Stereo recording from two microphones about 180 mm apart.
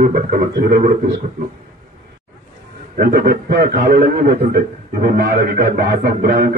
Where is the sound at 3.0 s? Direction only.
55° right (ahead or behind).